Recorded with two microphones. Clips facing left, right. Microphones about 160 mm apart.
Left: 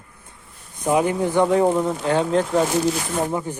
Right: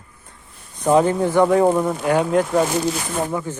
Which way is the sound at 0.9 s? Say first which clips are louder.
Right 3 dB; 15° left (ahead or behind).